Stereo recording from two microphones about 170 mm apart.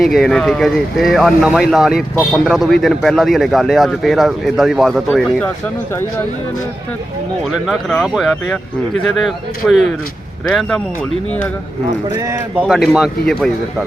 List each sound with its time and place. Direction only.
0.0 s speech: centre (ahead or behind)
7.5 s speech: centre (ahead or behind)
12.1 s speech: 15° right (ahead or behind)
12.6 s speech: centre (ahead or behind)